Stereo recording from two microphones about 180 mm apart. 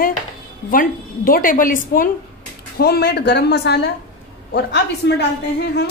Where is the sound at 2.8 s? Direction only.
65° left (ahead or behind).